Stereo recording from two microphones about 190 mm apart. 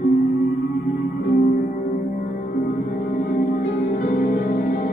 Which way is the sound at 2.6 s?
50° left (ahead or behind).